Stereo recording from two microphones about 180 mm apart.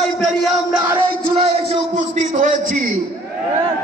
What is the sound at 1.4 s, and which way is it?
Music, 35° right (ahead or behind).